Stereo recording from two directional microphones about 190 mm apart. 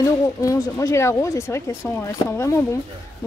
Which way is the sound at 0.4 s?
15° left (ahead or behind).